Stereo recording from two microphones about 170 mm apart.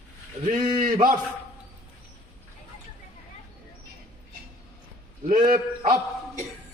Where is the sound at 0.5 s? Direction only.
55° right (ahead or behind).